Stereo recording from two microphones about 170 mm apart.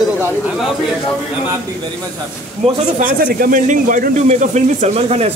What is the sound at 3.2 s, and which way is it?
Speech, 55° right (ahead or behind).